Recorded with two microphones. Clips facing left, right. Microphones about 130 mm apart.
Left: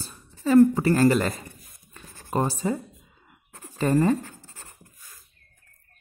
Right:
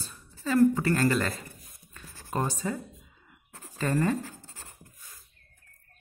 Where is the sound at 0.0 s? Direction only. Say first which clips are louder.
Left 5 dB; 35° left (ahead or behind).